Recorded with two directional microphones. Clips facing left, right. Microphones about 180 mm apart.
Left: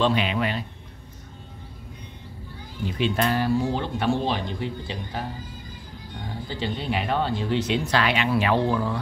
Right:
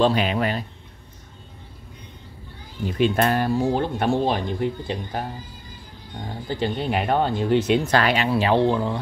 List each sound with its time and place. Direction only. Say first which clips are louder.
0.0 s speech: right 3 dB; 40° right (ahead or behind)
2.8 s speech: right 4 dB; 50° right (ahead or behind)
6.5 s speech: right 4 dB; 50° right (ahead or behind)
8.3 s speech: right 3 dB; 30° right (ahead or behind)